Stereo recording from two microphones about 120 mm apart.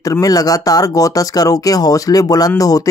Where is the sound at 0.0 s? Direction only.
30° left (ahead or behind).